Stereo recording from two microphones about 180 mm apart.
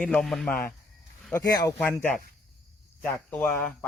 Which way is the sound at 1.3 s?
20° left (ahead or behind).